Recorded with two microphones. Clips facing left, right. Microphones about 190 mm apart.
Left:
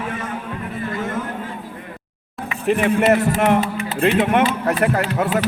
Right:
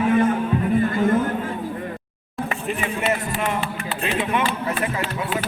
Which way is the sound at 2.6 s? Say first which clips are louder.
Left 12 dB; 70° left (ahead or behind).